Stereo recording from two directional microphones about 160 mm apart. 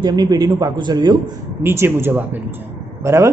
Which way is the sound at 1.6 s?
15° right (ahead or behind).